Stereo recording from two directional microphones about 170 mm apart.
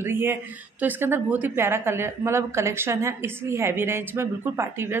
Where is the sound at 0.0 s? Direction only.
15° right (ahead or behind).